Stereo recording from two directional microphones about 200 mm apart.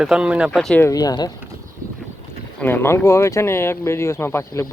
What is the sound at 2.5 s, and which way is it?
Speech, 10° left (ahead or behind).